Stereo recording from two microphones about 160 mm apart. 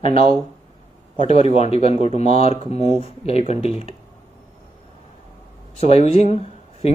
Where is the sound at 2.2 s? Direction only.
40° left (ahead or behind).